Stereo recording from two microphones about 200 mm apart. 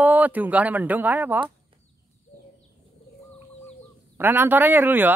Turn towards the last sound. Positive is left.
turn(degrees=-10)  # may be behind; listen again after turning